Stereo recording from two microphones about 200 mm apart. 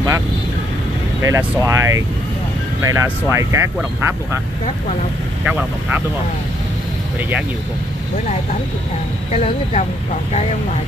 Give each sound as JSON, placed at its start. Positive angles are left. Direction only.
{"t": 1.2, "sound": "speech", "side_deg": -15}
{"t": 5.4, "sound": "speech", "side_deg": -10}
{"t": 9.3, "sound": "speech", "side_deg": 30}